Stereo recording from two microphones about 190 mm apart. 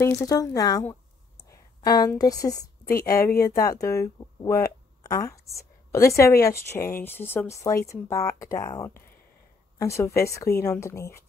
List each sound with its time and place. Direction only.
0.0 s a woman's voice: 20° left (ahead or behind)
2.8 s a woman's voice: 50° left (ahead or behind)
3.5 s speech: 20° left (ahead or behind)